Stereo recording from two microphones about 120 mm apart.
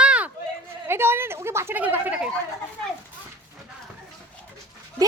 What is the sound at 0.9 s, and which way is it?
A woman's voice, 20° right (ahead or behind).